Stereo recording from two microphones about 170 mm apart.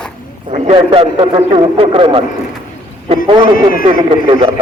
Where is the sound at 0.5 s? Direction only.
40° right (ahead or behind).